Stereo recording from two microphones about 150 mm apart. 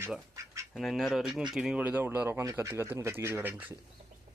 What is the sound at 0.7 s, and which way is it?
Speech, centre (ahead or behind).